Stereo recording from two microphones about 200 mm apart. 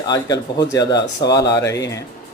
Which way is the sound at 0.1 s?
20° left (ahead or behind).